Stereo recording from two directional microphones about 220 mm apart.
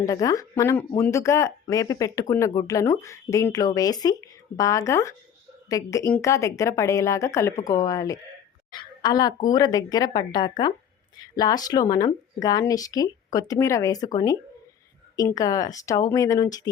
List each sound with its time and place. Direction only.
0.0 s a woman's voice: 15° left (ahead or behind)